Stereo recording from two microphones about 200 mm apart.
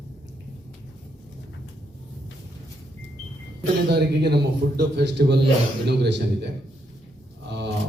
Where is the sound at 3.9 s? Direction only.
55° right (ahead or behind).